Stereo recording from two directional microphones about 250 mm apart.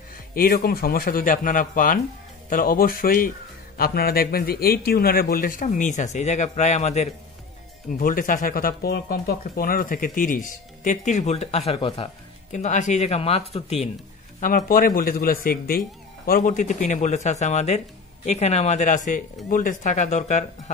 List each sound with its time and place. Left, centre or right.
0.3 s a man's voice: left